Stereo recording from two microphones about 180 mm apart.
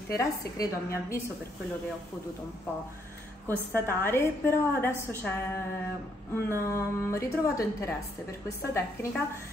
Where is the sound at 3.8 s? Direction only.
15° left (ahead or behind).